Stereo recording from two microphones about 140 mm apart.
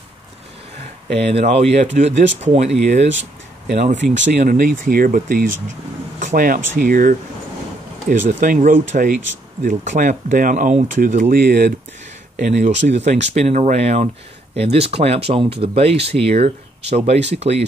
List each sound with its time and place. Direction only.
1.0 s speech: 50° right (ahead or behind); by 5.5 s 90° right
6.1 s speech: 75° right (ahead or behind)
8.3 s speech: 65° right (ahead or behind)
12.4 s speech: 60° right (ahead or behind)